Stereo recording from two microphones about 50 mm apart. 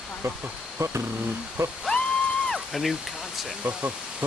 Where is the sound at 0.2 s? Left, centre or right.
Right.